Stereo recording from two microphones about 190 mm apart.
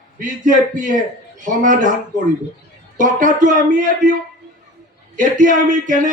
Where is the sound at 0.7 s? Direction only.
40° right (ahead or behind).